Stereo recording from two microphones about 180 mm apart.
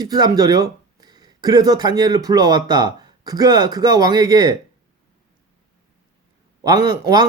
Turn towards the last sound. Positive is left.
turn(degrees=-20)  # may be behind; listen again after turning